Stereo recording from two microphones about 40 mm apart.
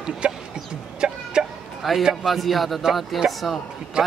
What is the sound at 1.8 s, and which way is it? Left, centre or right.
A man's voice, centre.